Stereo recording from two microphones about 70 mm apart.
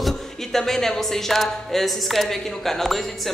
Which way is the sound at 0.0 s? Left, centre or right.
Centre.